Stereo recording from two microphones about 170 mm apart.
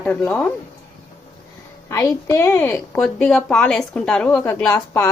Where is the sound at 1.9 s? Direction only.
20° left (ahead or behind).